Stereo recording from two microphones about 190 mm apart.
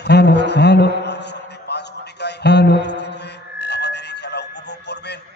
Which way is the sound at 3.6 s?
65° left (ahead or behind).